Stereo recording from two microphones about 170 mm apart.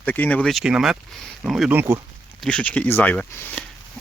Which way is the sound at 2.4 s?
5° left (ahead or behind).